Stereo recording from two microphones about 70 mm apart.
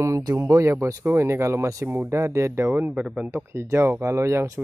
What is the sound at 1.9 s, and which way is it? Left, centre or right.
A man's voice, right.